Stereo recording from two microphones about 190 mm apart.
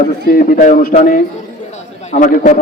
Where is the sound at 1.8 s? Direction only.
35° left (ahead or behind).